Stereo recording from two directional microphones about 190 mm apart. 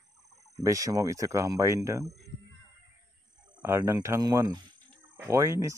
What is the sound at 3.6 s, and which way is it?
Speech, 15° right (ahead or behind).